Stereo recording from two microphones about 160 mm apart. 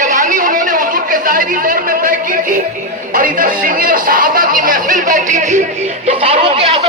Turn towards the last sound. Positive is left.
turn(degrees=-40)  # may be behind; listen again after turning